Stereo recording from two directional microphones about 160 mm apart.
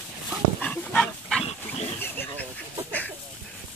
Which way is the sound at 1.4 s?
40° left (ahead or behind).